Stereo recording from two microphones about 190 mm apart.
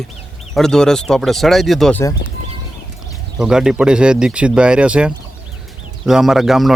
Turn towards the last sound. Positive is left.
turn(degrees=0)  # may be behind; listen again after turning